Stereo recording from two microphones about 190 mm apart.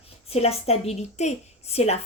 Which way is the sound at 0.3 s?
30° left (ahead or behind).